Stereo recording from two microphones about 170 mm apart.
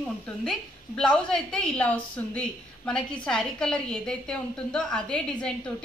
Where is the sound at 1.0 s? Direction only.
5° left (ahead or behind).